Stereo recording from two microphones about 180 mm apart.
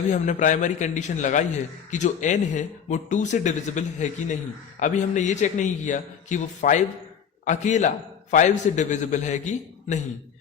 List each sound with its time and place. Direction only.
0.1 s a man's voice: 45° left (ahead or behind)